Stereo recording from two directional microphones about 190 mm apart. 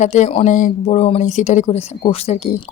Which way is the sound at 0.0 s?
40° left (ahead or behind).